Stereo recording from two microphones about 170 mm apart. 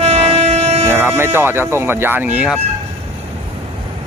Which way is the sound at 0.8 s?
15° right (ahead or behind).